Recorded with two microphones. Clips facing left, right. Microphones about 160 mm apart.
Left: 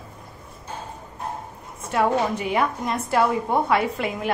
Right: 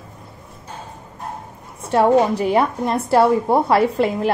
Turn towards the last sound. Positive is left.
turn(degrees=-35)  # may be behind; listen again after turning